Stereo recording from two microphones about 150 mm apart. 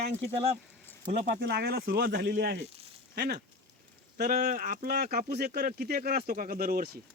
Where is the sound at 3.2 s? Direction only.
70° right (ahead or behind); by 7.0 s 85° right.